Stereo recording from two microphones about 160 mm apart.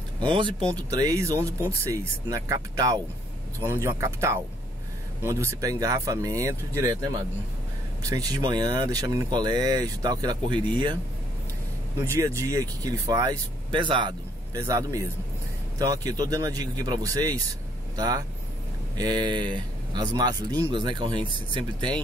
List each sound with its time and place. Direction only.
0.2 s speech: 30° right (ahead or behind)
12.0 s speech: 20° right (ahead or behind)